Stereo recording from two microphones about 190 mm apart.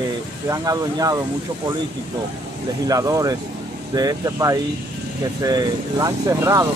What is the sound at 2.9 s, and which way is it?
Speech, 20° right (ahead or behind).